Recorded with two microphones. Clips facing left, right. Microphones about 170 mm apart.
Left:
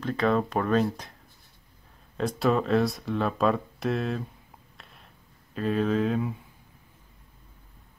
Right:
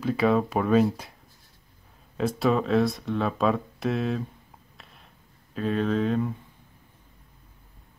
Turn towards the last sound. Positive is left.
turn(degrees=0)  # may be behind; listen again after turning